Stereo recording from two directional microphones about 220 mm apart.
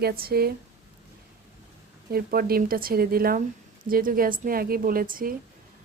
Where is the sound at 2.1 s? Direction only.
45° right (ahead or behind).